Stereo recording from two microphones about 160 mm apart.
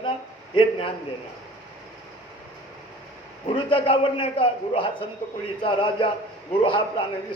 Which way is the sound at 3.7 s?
35° left (ahead or behind).